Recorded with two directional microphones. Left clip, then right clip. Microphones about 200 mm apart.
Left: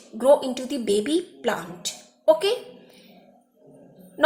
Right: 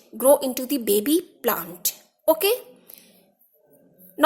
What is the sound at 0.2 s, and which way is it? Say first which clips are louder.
A woman's voice: even; 50° right (ahead or behind).